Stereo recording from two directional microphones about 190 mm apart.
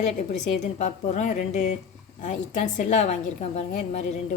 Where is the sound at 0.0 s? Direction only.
40° left (ahead or behind).